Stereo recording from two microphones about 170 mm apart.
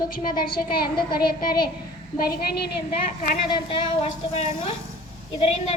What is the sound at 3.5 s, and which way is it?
A woman's voice, 30° left (ahead or behind).